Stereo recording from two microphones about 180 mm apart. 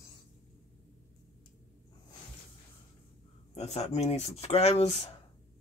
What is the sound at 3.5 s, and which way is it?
Speech, 35° left (ahead or behind).